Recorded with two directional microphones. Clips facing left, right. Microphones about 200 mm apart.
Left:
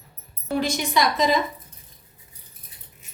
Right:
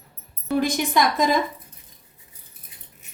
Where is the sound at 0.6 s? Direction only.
55° right (ahead or behind).